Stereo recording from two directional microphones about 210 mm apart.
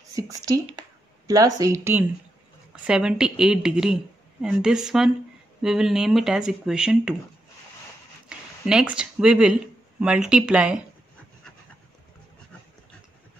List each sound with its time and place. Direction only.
0.1 s a woman's voice: 15° right (ahead or behind)
8.3 s speech: 5° right (ahead or behind)